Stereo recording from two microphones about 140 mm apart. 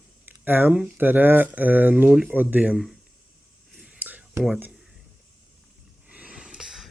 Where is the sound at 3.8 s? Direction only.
10° right (ahead or behind).